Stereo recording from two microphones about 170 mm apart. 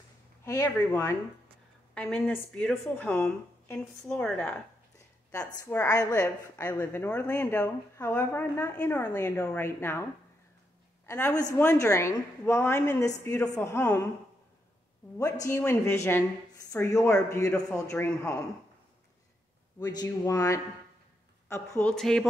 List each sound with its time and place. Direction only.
0.5 s a woman's voice: 15° left (ahead or behind)
2.0 s a woman's voice: 5° left (ahead or behind)
5.6 s a woman's voice: 15° left (ahead or behind)
11.1 s a woman's voice: 15° left (ahead or behind)
15.4 s a woman's voice: 15° left (ahead or behind)
19.8 s a woman's voice: 20° left (ahead or behind)
21.7 s a woman's voice: 5° left (ahead or behind)